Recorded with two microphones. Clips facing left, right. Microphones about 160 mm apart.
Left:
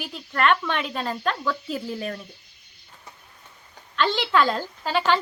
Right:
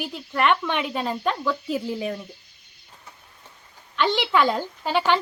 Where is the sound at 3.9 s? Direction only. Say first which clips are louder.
Even; 15° right (ahead or behind).